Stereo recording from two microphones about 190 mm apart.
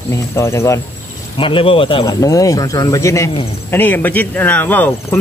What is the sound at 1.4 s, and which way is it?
Speech, 25° left (ahead or behind).